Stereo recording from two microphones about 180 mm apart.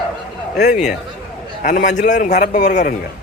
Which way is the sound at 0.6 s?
40° left (ahead or behind).